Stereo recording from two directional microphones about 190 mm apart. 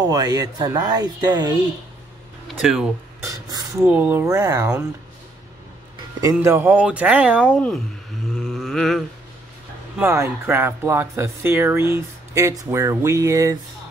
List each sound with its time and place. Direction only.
0.0 s speech: 20° right (ahead or behind)
2.4 s speech: 5° right (ahead or behind)
6.2 s speech: 15° right (ahead or behind)
8.3 s a sound: centre (ahead or behind)
9.9 s speech: 15° right (ahead or behind)